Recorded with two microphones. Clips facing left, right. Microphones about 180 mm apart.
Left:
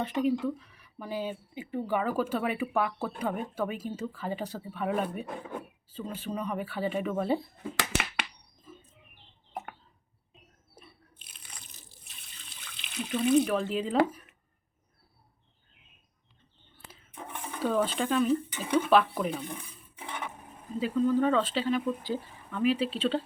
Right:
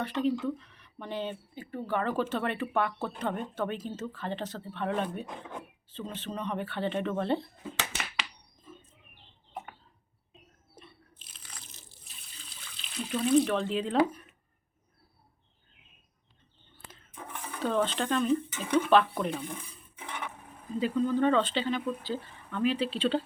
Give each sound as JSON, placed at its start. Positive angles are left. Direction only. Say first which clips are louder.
{"t": 0.0, "sound": "speech", "louder": "left 1 dB", "side_deg": 10}
{"t": 7.8, "sound": "a sound", "louder": "left 5 dB", "side_deg": 75}
{"t": 8.7, "sound": "a sound", "louder": "even", "side_deg": 5}
{"t": 13.0, "sound": "speech", "louder": "even", "side_deg": 0}
{"t": 17.6, "sound": "speech", "louder": "left 1 dB", "side_deg": 5}
{"t": 20.7, "sound": "speech", "louder": "left 1 dB", "side_deg": 5}